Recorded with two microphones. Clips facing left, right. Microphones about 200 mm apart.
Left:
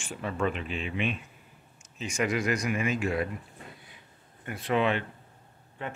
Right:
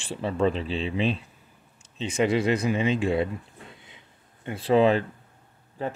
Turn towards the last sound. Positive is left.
turn(degrees=-35)  # may be behind; listen again after turning